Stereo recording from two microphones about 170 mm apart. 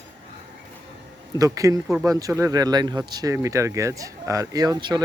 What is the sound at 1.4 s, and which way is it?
Speech, 20° right (ahead or behind).